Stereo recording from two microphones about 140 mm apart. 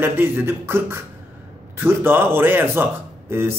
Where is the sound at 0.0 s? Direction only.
15° right (ahead or behind).